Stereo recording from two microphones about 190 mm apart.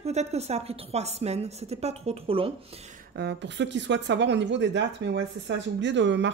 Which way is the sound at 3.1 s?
65° right (ahead or behind).